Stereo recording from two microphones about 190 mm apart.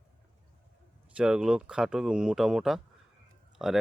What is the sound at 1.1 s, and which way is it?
Speech, 5° right (ahead or behind).